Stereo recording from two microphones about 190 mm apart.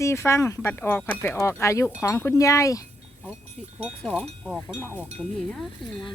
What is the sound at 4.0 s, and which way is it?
Wind chime, 5° left (ahead or behind).